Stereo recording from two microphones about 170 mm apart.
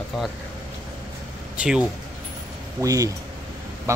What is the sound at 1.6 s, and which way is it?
Speech, 5° right (ahead or behind).